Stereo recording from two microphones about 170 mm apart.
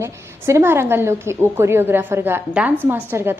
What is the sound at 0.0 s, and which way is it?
A woman's voice, 15° right (ahead or behind).